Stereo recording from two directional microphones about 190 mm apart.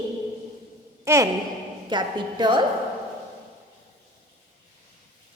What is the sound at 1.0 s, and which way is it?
Sigh, 15° right (ahead or behind).